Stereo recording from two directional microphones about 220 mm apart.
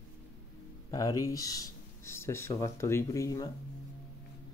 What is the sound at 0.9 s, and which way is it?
Speech, 15° left (ahead or behind).